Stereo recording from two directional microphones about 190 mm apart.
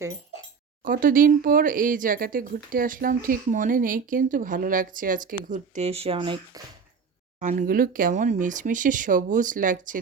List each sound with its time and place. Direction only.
0.9 s speech: 45° right (ahead or behind); by 6.6 s 25° right (ahead or behind)
7.3 s speech: 40° right (ahead or behind)